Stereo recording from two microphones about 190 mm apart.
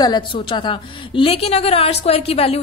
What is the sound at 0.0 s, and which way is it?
A woman's voice, 25° left (ahead or behind).